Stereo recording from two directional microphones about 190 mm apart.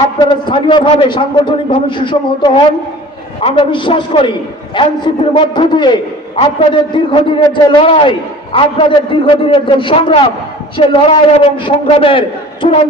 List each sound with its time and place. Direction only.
0.3 s a man's voice: 25° left (ahead or behind)